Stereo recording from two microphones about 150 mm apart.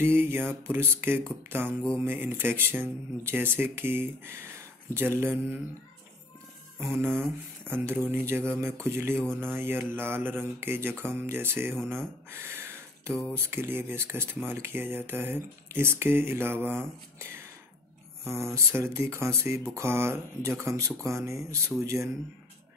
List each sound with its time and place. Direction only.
0.0 s mantra: 15° right (ahead or behind)
6.8 s mantra: 15° right (ahead or behind)
16.6 s speech: 15° right (ahead or behind)
18.2 s mantra: 15° right (ahead or behind)
19.7 s speech: 15° right (ahead or behind)